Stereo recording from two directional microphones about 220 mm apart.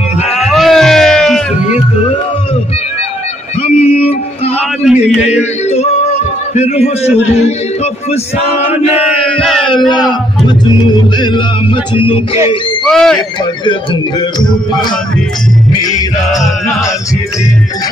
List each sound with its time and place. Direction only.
0.3 s music: centre (ahead or behind)
3.8 s music: 30° left (ahead or behind)
4.8 s a sound: 5° right (ahead or behind)
5.4 s yodeling: 30° left (ahead or behind)
6.5 s a man's voice: 30° left (ahead or behind)
8.9 s chant: centre (ahead or behind)
9.8 s speech: centre (ahead or behind)
11.1 s music: 20° left (ahead or behind)
12.8 s speech: centre (ahead or behind)